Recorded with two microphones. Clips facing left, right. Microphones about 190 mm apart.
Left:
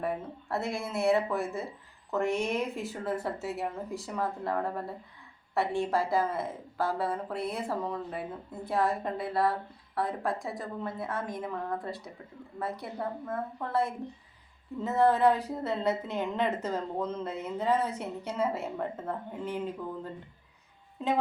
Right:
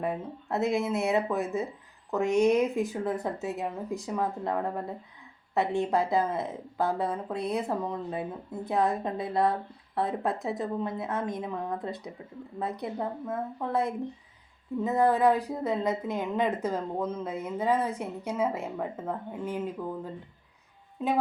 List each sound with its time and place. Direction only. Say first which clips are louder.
0.0 s a woman's voice: right 1 dB; 20° right (ahead or behind)